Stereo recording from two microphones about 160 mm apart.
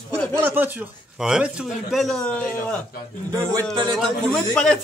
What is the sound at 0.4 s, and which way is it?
Speech, 10° right (ahead or behind).